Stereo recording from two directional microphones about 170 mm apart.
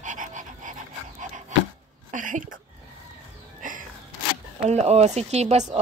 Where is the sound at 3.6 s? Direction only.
50° right (ahead or behind).